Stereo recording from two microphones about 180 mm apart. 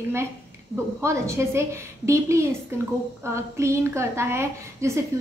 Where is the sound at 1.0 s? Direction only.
15° right (ahead or behind).